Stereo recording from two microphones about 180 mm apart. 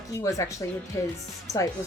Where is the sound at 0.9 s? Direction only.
15° left (ahead or behind).